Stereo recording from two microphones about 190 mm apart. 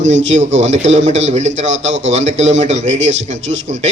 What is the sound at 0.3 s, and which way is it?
A man's voice, 40° right (ahead or behind).